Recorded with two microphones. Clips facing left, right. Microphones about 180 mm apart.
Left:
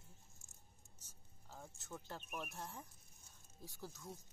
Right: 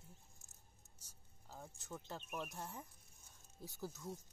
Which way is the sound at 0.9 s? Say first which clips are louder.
Left 1 dB; 10° right (ahead or behind).